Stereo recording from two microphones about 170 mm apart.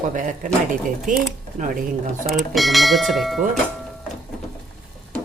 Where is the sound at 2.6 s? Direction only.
Centre (ahead or behind).